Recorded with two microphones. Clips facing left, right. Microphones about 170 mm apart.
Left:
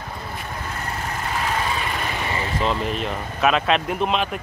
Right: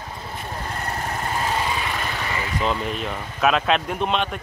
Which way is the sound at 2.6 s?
Centre (ahead or behind).